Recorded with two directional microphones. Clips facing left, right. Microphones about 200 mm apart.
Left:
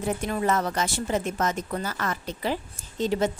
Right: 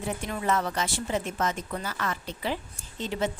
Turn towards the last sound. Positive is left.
turn(degrees=40)  # may be behind; listen again after turning